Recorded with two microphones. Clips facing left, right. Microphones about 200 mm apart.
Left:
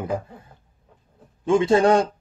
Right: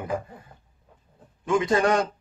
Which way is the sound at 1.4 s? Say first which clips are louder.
Left 5 dB; 30° left (ahead or behind).